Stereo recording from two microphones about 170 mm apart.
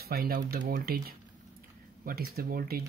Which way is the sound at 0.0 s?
60° right (ahead or behind).